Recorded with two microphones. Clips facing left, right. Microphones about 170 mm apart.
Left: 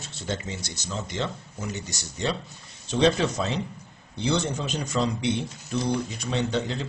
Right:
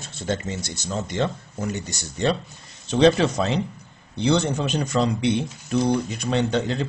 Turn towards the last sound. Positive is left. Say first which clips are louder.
# right 4 dB
turn(degrees=-60)  # may be behind; listen again after turning